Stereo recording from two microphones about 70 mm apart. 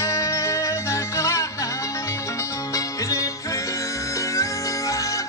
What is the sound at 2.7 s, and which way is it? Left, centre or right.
Music, left.